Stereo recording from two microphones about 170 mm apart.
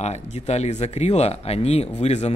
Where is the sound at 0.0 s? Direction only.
40° left (ahead or behind).